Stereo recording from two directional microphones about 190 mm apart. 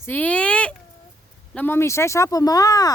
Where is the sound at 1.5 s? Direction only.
10° left (ahead or behind).